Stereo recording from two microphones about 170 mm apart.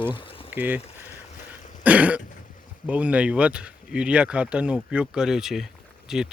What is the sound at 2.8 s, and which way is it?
Speech, 10° right (ahead or behind).